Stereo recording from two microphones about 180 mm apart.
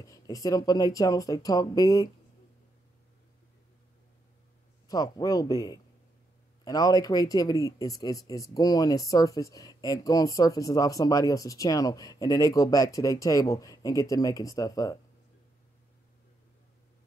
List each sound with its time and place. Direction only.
0.0 s speech: 20° left (ahead or behind)
4.8 s speech: 20° left (ahead or behind)